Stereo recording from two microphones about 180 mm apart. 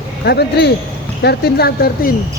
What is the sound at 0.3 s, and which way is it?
Speech, 65° left (ahead or behind).